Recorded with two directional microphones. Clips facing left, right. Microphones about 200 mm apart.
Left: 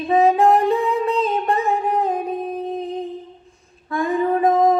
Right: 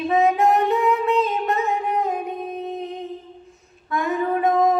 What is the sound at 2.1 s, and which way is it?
Music, 30° left (ahead or behind).